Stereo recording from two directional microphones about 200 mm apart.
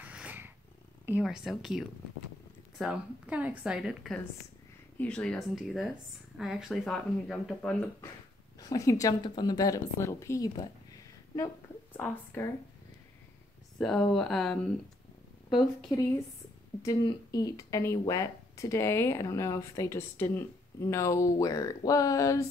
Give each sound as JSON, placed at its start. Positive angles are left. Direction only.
{"t": 0.0, "sound": "cat", "side_deg": -5}
{"t": 1.0, "sound": "a woman's voice", "side_deg": -5}
{"t": 8.5, "sound": "speech", "side_deg": 20}
{"t": 12.0, "sound": "speech", "side_deg": 10}
{"t": 13.7, "sound": "a woman's voice", "side_deg": 5}
{"t": 16.8, "sound": "speech", "side_deg": 20}